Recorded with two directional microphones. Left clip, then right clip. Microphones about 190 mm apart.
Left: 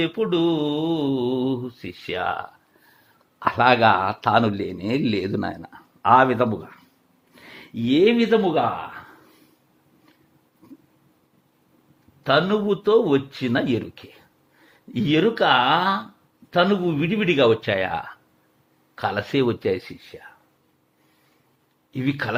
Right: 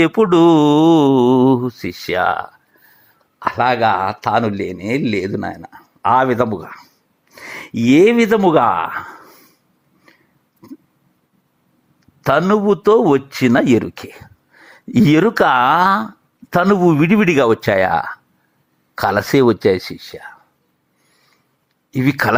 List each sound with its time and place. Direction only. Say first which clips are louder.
0.0 s speech: right 10 dB; 40° right (ahead or behind); by 2.5 s 25° right (ahead or behind)
3.3 s speech: right 2 dB; 5° right (ahead or behind); by 9.0 s 40° right (ahead or behind)
12.2 s a man's voice: right 6 dB; 40° right (ahead or behind)
17.7 s a man's voice: right 10 dB; 30° right (ahead or behind)
21.9 s a man's voice: right 10 dB; 35° right (ahead or behind)